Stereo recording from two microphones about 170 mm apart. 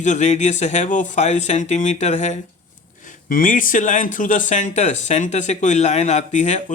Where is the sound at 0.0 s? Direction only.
45° left (ahead or behind).